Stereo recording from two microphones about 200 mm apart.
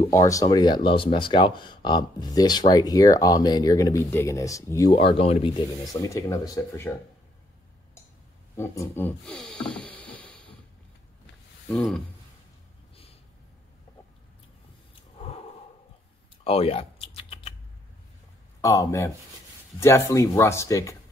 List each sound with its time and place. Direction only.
0.1 s speech: 15° left (ahead or behind)
4.9 s speech: 30° left (ahead or behind)
6.0 s speech: 15° left (ahead or behind)
8.5 s speech: 10° left (ahead or behind)
11.7 s speech: centre (ahead or behind)
16.4 s typing: 30° left (ahead or behind)
18.6 s speech: 15° left (ahead or behind)